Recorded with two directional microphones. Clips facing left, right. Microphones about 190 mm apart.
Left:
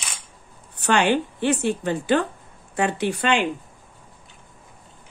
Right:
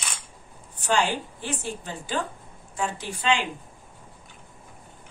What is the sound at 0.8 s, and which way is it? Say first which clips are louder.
A woman's voice: left 5 dB; 70° left (ahead or behind).